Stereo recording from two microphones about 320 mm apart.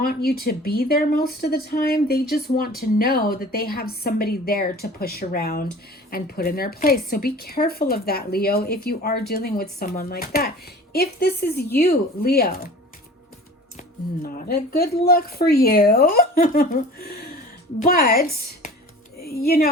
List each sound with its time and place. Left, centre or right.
0.0 s speech: left
14.2 s speech: left